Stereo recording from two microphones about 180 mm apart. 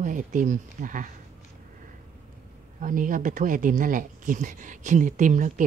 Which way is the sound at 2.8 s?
50° right (ahead or behind).